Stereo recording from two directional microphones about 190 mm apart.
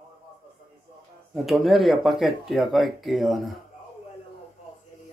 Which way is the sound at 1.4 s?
Centre (ahead or behind).